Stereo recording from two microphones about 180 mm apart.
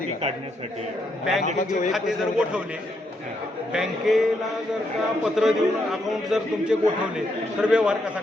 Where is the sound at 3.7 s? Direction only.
5° right (ahead or behind).